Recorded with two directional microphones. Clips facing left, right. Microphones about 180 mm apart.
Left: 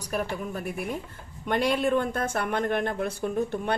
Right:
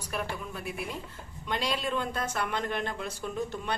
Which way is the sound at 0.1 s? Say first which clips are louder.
Left 5 dB; 45° left (ahead or behind).